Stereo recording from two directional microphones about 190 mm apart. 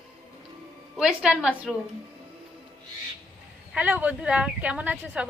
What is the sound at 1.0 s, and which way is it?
Speech, 5° right (ahead or behind).